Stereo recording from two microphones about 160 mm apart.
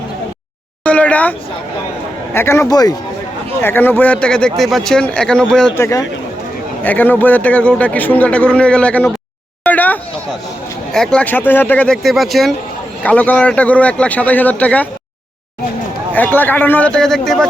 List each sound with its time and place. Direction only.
0.9 s a sound: 10° left (ahead or behind)
2.3 s a man's voice: 15° left (ahead or behind)
3.6 s speech: 15° left (ahead or behind)
5.7 s a man's voice: 20° left (ahead or behind)
9.6 s a sound: 10° left (ahead or behind)
10.9 s a man's voice: 5° left (ahead or behind)
16.1 s a man's voice: 10° left (ahead or behind)